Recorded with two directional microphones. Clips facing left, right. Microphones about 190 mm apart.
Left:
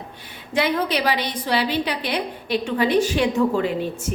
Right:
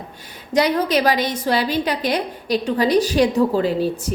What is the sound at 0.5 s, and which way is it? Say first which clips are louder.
A woman's voice: right 4 dB; 40° right (ahead or behind).